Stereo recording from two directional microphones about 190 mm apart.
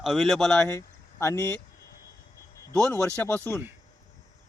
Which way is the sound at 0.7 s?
15° left (ahead or behind).